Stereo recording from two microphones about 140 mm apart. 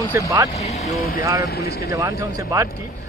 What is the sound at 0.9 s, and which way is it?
Speech, 90° left.